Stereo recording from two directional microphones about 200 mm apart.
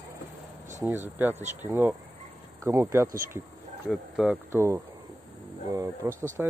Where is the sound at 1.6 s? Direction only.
10° right (ahead or behind).